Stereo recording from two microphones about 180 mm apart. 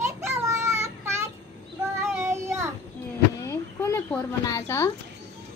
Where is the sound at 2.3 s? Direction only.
15° right (ahead or behind).